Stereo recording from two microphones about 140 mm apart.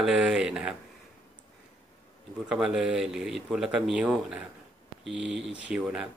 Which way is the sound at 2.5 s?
5° right (ahead or behind).